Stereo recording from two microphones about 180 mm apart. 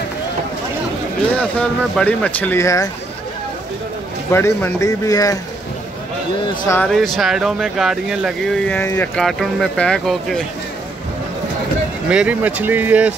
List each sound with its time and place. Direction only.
1.3 s speech: 5° left (ahead or behind)
4.3 s speech: 15° left (ahead or behind)
6.9 s speech: centre (ahead or behind)
8.6 s speech: 10° left (ahead or behind)
12.1 s speech: 5° right (ahead or behind)